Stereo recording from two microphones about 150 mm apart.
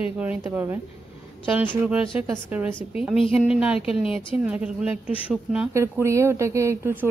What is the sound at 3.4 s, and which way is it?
A woman's voice, 10° right (ahead or behind).